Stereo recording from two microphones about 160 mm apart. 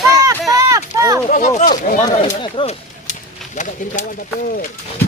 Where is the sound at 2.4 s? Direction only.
35° left (ahead or behind).